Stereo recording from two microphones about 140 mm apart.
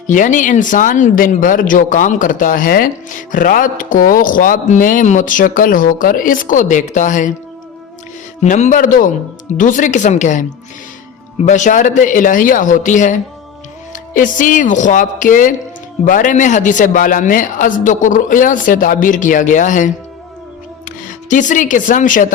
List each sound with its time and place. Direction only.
0.1 s speech: 65° left (ahead or behind)
8.4 s speech: 60° left (ahead or behind)
11.4 s speech: 60° left (ahead or behind)